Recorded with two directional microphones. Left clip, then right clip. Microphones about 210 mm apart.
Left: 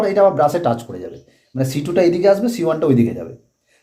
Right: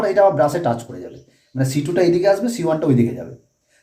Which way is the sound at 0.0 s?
30° left (ahead or behind).